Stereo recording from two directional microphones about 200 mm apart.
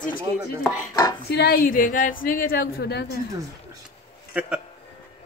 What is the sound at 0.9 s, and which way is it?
Chopping, 20° left (ahead or behind).